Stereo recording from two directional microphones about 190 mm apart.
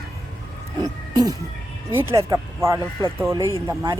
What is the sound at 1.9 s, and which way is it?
Speech, 15° right (ahead or behind).